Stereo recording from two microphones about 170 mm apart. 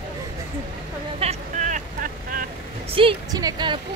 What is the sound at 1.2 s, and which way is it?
Vehicle, 40° right (ahead or behind).